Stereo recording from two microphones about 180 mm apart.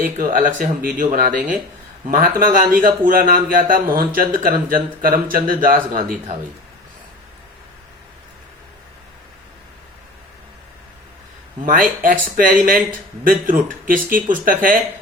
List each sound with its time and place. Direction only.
0.2 s a man's voice: 50° right (ahead or behind)
11.6 s a man's voice: 50° right (ahead or behind)